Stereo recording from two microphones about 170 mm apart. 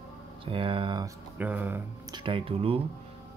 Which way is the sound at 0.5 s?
30° right (ahead or behind).